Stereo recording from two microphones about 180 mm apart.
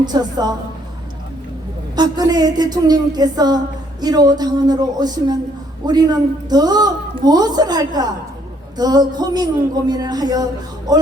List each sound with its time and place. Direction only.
0.0 s a man's voice: 20° right (ahead or behind)
2.0 s a man's voice: 20° right (ahead or behind)